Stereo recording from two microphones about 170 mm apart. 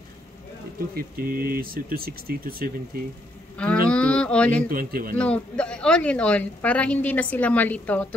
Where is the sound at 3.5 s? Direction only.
5° left (ahead or behind).